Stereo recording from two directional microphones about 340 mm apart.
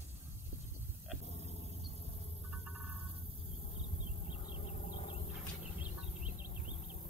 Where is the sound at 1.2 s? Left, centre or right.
Centre.